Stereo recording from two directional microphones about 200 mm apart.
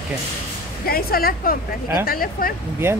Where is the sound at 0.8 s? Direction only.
50° left (ahead or behind).